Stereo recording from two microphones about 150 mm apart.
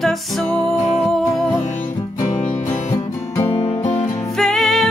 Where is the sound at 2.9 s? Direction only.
15° left (ahead or behind).